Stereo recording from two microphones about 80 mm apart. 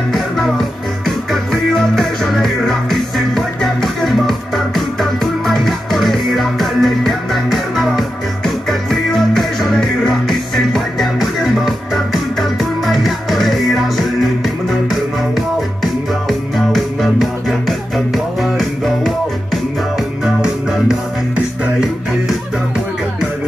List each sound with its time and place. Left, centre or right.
0.1 s music: centre